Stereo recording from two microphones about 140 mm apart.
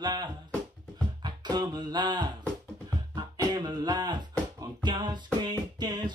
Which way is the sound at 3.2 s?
30° right (ahead or behind).